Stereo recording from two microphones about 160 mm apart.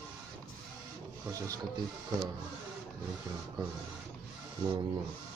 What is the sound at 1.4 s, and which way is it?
Speech, 20° right (ahead or behind).